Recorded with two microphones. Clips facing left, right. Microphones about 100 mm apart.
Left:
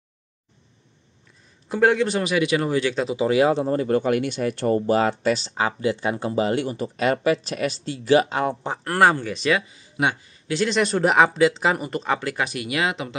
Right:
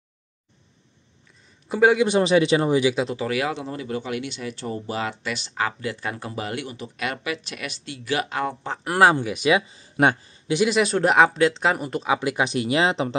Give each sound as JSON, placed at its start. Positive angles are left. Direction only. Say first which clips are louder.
{"t": 1.7, "sound": "speech", "louder": "right 1 dB", "side_deg": -5}
{"t": 2.0, "sound": "speech", "louder": "right 4 dB", "side_deg": -25}
{"t": 2.8, "sound": "speech", "louder": "right 2 dB", "side_deg": -10}
{"t": 3.2, "sound": "speech", "louder": "left 7 dB", "side_deg": 25}
{"t": 5.6, "sound": "speech", "louder": "left 4 dB", "side_deg": 20}
{"t": 8.8, "sound": "speech", "louder": "right 1 dB", "side_deg": -10}
{"t": 10.0, "sound": "a man's voice", "louder": "right 4 dB", "side_deg": -50}
{"t": 10.5, "sound": "speech", "louder": "right 1 dB", "side_deg": -10}
{"t": 12.2, "sound": "speech", "louder": "right 3 dB", "side_deg": -15}